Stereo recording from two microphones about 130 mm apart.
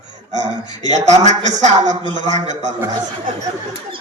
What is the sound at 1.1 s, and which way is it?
Speech, 60° right (ahead or behind).